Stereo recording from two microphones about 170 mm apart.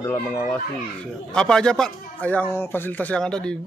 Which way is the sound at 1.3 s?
5° left (ahead or behind).